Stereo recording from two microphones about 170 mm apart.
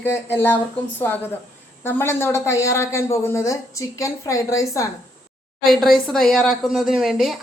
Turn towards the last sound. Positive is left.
turn(degrees=-5)  # may be behind; listen again after turning